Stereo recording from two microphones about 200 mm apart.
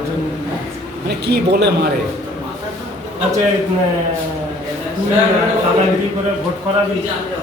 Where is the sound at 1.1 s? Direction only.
55° right (ahead or behind).